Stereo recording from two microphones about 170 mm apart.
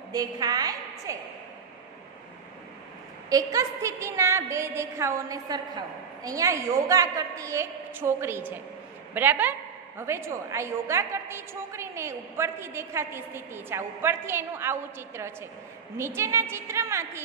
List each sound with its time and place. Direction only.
0.1 s a woman's voice: 20° right (ahead or behind)
3.3 s a woman's voice: 20° right (ahead or behind)